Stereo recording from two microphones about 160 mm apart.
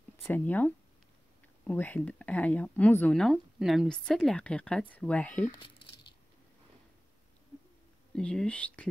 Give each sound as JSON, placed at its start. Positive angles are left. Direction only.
{"t": 0.3, "sound": "speech", "side_deg": 10}
{"t": 8.1, "sound": "speech", "side_deg": 5}